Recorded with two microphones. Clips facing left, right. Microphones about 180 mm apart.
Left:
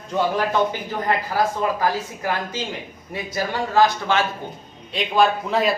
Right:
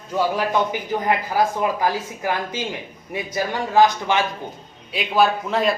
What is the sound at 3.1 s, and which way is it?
Speech, 15° right (ahead or behind).